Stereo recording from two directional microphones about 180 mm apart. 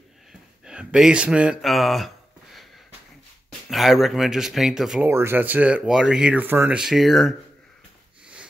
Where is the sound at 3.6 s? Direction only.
Centre (ahead or behind).